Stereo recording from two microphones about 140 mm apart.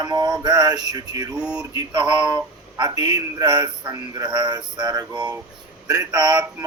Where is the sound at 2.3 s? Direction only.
30° right (ahead or behind).